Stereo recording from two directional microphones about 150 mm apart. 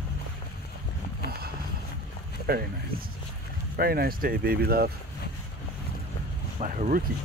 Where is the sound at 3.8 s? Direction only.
90° right.